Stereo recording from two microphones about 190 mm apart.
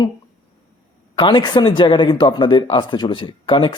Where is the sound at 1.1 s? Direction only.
25° left (ahead or behind).